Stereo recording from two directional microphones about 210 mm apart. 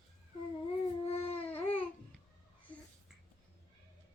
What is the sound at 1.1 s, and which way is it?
Baby cry, 30° left (ahead or behind).